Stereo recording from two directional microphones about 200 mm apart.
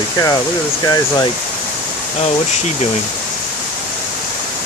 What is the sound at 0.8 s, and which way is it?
Speech, 20° left (ahead or behind).